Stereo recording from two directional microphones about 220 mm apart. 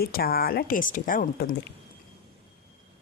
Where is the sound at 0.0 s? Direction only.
45° left (ahead or behind).